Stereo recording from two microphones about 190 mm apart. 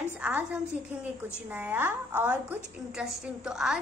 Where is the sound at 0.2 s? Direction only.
5° right (ahead or behind).